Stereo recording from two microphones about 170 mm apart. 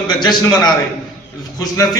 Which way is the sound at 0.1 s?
25° left (ahead or behind).